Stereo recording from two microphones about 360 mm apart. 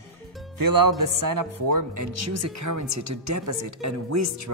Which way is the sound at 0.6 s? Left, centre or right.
Right.